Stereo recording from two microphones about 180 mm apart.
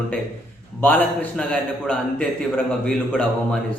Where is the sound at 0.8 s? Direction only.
10° left (ahead or behind).